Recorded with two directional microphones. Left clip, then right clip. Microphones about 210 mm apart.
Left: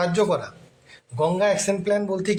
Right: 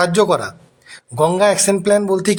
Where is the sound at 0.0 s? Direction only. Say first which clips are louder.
Right 7 dB; 40° right (ahead or behind).